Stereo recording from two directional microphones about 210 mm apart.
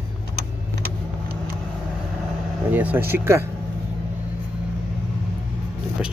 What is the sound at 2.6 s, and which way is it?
Speech, 10° right (ahead or behind).